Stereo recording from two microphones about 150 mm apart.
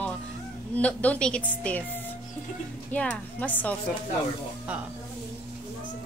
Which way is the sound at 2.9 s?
10° left (ahead or behind).